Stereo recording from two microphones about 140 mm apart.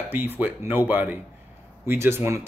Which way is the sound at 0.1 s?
15° right (ahead or behind).